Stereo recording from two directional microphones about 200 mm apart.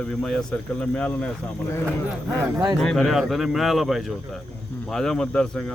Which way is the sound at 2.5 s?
15° right (ahead or behind).